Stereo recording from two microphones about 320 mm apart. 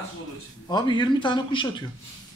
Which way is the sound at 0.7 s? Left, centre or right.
Centre.